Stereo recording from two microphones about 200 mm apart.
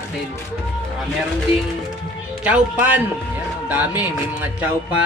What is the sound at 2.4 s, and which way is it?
Speech, 5° right (ahead or behind).